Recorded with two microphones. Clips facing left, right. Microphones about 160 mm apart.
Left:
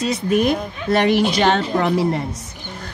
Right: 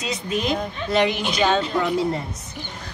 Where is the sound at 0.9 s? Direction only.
60° left (ahead or behind).